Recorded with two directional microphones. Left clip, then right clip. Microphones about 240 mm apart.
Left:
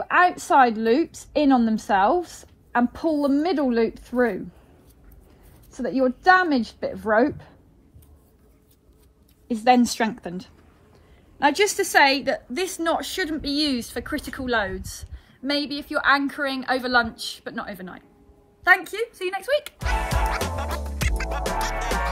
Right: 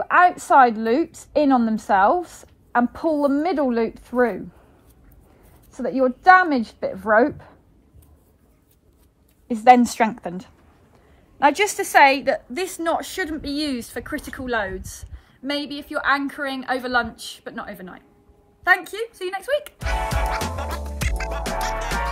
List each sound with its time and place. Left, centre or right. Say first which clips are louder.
0.0 s a woman's voice: right 3 dB; right
5.7 s a woman's voice: right 2 dB; right
9.5 s a woman's voice: right 5 dB; right; by 18.0 s centre
18.6 s music: even; centre